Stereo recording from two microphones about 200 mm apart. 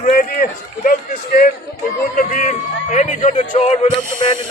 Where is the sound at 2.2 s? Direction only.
40° left (ahead or behind).